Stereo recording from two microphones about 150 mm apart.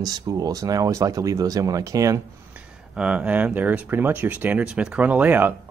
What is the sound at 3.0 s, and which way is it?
Speech, 10° right (ahead or behind).